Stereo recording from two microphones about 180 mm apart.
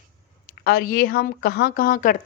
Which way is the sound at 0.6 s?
60° left (ahead or behind).